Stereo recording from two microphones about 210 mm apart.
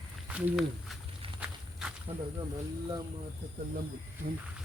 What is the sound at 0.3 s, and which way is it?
Speech, 5° right (ahead or behind).